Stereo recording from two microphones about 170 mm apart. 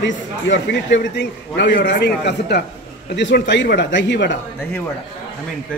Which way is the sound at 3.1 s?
90° left.